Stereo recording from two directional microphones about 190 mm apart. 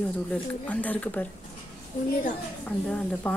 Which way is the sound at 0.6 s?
10° left (ahead or behind).